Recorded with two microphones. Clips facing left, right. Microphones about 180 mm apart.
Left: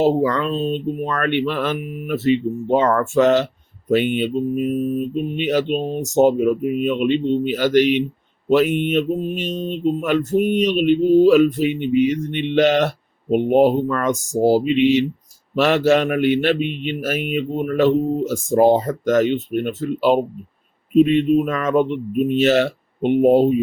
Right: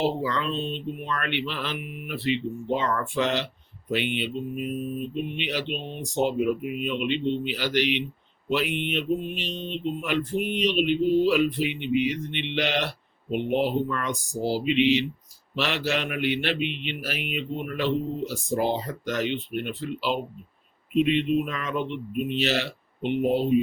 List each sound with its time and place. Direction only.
0.0 s speech: 45° left (ahead or behind)